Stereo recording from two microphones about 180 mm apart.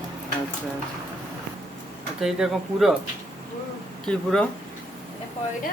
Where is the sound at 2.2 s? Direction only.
Centre (ahead or behind).